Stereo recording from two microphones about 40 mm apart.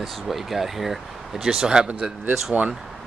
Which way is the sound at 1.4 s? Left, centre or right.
Centre.